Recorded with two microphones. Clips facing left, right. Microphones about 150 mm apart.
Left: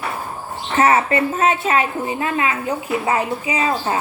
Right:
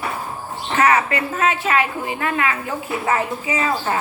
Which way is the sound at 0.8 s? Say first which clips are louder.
Left 2 dB; 25° left (ahead or behind).